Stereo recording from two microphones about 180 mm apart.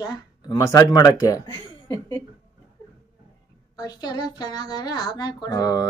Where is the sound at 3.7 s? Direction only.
20° left (ahead or behind).